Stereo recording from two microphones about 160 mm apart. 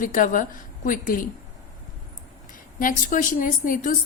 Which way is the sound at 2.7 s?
55° left (ahead or behind).